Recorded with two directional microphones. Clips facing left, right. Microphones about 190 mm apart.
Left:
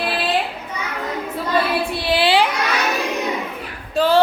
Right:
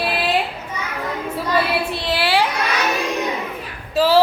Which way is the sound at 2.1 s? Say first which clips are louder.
Left 3 dB; 20° left (ahead or behind).